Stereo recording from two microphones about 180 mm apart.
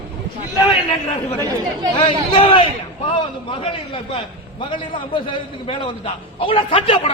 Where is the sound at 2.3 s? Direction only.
30° left (ahead or behind).